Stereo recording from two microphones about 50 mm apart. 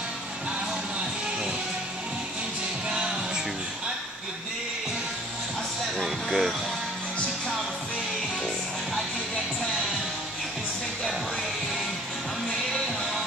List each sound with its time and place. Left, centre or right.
2.9 s music: centre
5.9 s music: centre